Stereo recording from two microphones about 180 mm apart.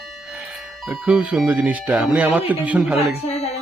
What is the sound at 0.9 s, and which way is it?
Speech, 5° right (ahead or behind).